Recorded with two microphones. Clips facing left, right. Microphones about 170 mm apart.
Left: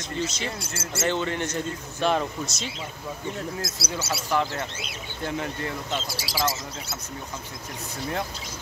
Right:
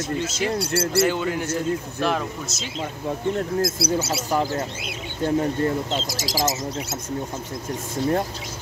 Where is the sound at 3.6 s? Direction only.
50° right (ahead or behind).